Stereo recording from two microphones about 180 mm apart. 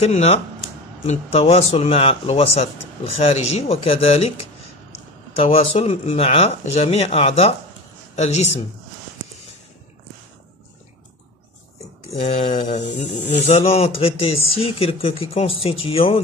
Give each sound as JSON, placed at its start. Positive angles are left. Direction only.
{"t": 0.0, "sound": "speech", "side_deg": 35}
{"t": 5.3, "sound": "speech", "side_deg": 35}
{"t": 12.2, "sound": "speech", "side_deg": 40}